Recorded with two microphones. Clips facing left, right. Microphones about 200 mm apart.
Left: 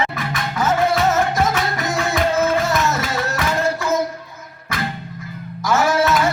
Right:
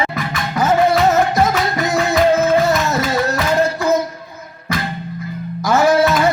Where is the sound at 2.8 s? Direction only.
35° right (ahead or behind).